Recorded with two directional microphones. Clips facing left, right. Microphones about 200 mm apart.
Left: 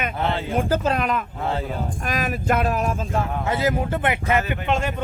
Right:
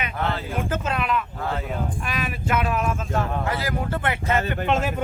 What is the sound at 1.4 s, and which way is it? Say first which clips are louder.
Speech: left 3 dB; 25° left (ahead or behind).